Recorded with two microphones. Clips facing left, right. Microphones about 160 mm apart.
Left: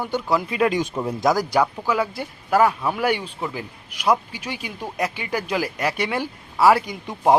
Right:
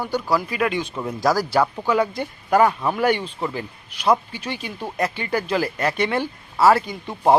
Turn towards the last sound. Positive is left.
turn(degrees=15)  # may be behind; listen again after turning